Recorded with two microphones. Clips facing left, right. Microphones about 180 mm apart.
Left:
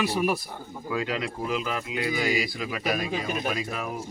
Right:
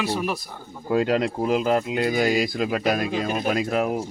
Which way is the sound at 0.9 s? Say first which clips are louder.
Right 8 dB; 50° right (ahead or behind).